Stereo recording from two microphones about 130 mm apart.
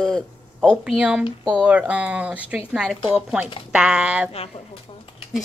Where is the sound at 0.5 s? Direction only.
5° right (ahead or behind).